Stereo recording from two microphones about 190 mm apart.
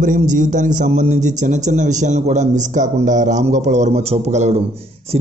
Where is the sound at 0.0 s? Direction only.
40° right (ahead or behind).